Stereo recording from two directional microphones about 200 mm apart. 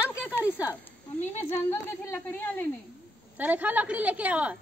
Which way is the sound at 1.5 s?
15° left (ahead or behind).